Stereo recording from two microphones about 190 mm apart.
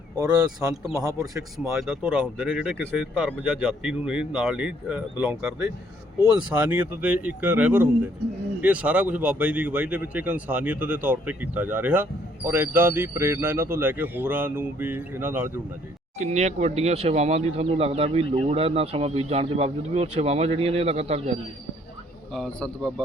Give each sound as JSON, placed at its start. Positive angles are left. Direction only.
{"t": 0.2, "sound": "speech", "side_deg": -20}
{"t": 1.5, "sound": "speech", "side_deg": 0}
{"t": 16.1, "sound": "speech", "side_deg": -35}
{"t": 22.4, "sound": "speech", "side_deg": 0}